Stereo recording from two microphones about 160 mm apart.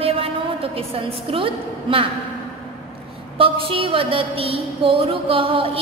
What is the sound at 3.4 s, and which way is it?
A woman's voice, 35° right (ahead or behind).